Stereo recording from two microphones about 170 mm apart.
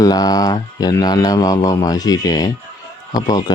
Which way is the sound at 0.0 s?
25° left (ahead or behind).